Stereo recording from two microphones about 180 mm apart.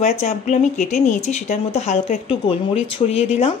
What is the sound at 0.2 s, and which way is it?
Speech, 40° left (ahead or behind).